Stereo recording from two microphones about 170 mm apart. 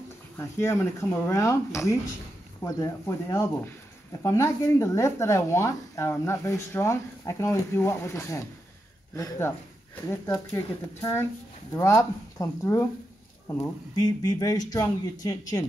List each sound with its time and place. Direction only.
0.4 s speech: 15° left (ahead or behind)